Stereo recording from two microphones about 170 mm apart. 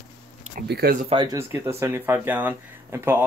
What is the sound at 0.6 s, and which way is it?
Speech, 65° right (ahead or behind).